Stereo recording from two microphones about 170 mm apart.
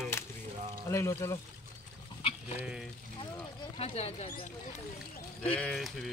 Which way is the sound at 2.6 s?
5° right (ahead or behind).